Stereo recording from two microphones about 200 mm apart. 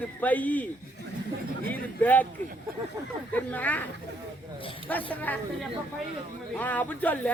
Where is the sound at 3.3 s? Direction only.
5° left (ahead or behind).